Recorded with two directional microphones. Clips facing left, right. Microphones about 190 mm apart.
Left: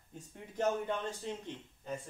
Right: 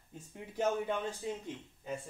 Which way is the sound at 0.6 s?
10° right (ahead or behind).